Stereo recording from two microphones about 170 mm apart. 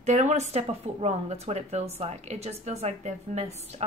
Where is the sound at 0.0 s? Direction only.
45° right (ahead or behind).